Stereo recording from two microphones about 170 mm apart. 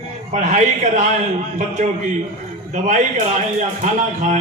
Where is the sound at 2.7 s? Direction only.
45° right (ahead or behind).